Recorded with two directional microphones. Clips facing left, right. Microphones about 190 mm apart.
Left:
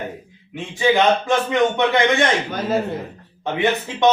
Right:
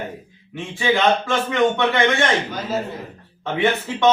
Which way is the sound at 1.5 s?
15° left (ahead or behind).